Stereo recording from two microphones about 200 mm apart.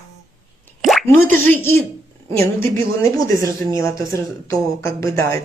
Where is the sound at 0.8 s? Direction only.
Centre (ahead or behind).